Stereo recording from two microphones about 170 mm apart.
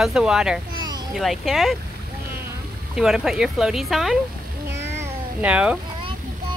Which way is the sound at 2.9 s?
Centre (ahead or behind).